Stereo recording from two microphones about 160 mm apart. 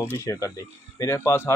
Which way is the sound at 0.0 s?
15° left (ahead or behind).